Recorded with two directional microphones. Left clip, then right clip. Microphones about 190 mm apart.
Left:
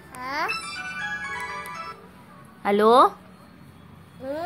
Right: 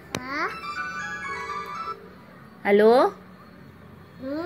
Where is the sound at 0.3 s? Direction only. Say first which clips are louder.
Left 2 dB; 55° left (ahead or behind).